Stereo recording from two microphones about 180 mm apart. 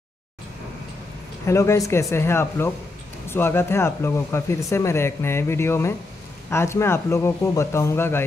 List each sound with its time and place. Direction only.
1.4 s speech: 15° left (ahead or behind)